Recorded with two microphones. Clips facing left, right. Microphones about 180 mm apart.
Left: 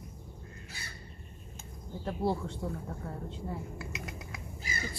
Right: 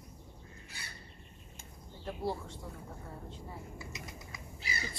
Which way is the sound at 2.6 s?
70° left (ahead or behind).